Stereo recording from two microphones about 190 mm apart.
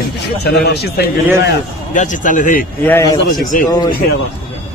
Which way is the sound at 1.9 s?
40° left (ahead or behind).